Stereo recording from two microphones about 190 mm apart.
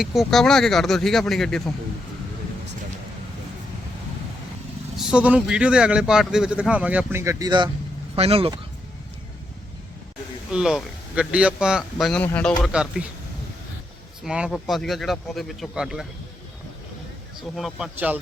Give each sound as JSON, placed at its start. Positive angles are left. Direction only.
{"t": 0.0, "sound": "a man's voice", "side_deg": 0}
{"t": 4.9, "sound": "speech", "side_deg": -5}
{"t": 10.5, "sound": "a man's voice", "side_deg": -5}
{"t": 12.7, "sound": "a man's voice", "side_deg": -5}
{"t": 14.3, "sound": "a man's voice", "side_deg": -5}
{"t": 17.6, "sound": "a man's voice", "side_deg": 0}